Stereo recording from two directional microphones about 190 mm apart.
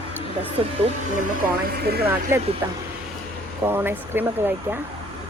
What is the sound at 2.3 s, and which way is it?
Speech, 15° right (ahead or behind).